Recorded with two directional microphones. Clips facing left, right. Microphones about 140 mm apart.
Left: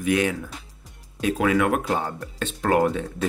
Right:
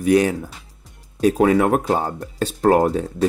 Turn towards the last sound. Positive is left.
turn(degrees=-40)  # may be behind; listen again after turning